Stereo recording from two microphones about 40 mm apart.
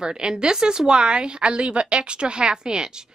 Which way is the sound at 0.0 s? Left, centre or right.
Centre.